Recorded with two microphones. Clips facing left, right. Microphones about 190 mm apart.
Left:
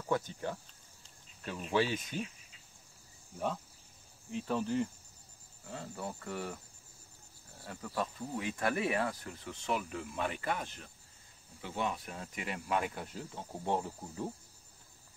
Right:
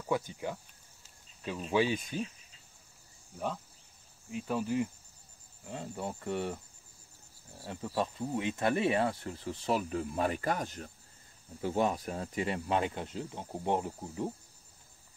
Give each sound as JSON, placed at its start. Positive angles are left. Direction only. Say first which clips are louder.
{"t": 0.1, "sound": "cricket", "louder": "right 1 dB", "side_deg": -10}
{"t": 3.3, "sound": "cricket", "louder": "even", "side_deg": 0}
{"t": 5.7, "sound": "speech", "louder": "right 3 dB", "side_deg": -20}
{"t": 7.6, "sound": "speech", "louder": "right 4 dB", "side_deg": -25}